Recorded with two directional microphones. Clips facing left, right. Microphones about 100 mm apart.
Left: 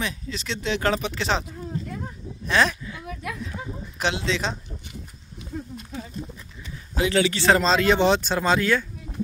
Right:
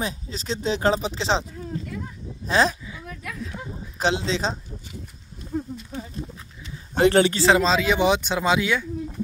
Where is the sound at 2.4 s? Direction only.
30° right (ahead or behind).